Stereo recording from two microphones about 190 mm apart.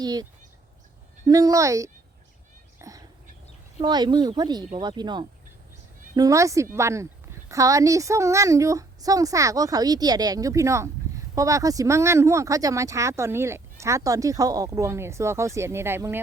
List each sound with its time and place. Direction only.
0.0 s speech: 20° right (ahead or behind)
1.3 s speech: 20° right (ahead or behind)
2.7 s a sound: 15° right (ahead or behind)
3.8 s speech: 20° right (ahead or behind)